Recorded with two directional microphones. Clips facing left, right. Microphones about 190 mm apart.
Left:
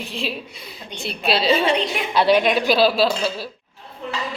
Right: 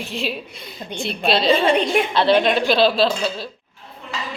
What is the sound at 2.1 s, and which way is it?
Speech, 10° left (ahead or behind).